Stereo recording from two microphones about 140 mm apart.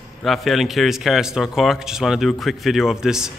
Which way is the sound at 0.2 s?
Centre (ahead or behind).